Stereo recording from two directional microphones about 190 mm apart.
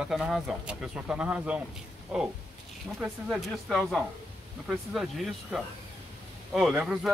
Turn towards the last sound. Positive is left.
turn(degrees=-5)  # may be behind; listen again after turning